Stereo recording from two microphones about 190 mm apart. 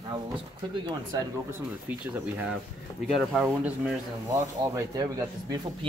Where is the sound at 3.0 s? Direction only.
Centre (ahead or behind).